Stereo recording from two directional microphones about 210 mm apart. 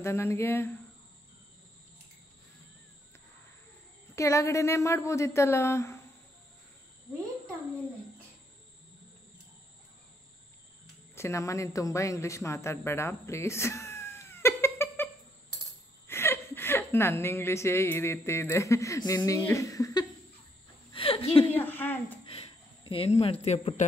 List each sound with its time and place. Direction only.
0.0 s a woman's voice: 10° left (ahead or behind)
4.1 s a woman's voice: 15° left (ahead or behind)
11.1 s speech: 15° left (ahead or behind)
16.1 s a woman's voice: 10° left (ahead or behind)
21.5 s a woman's voice: 10° left (ahead or behind)
22.2 s a sound: 25° left (ahead or behind)
23.4 s speech: 30° left (ahead or behind)